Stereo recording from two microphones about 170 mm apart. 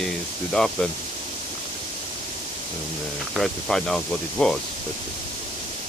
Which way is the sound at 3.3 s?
Centre (ahead or behind).